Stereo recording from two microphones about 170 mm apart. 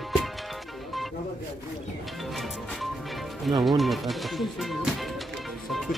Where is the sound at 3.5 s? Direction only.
Centre (ahead or behind).